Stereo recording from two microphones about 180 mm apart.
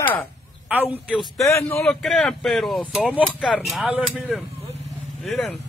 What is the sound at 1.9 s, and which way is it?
Speech, 5° left (ahead or behind).